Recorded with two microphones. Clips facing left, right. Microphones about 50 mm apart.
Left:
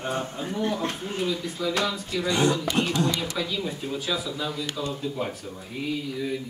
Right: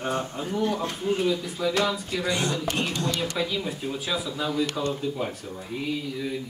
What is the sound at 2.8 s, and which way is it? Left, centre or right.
Speech, centre.